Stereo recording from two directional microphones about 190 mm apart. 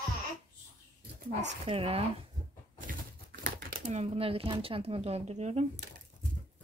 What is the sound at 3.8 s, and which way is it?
Speech, 35° right (ahead or behind).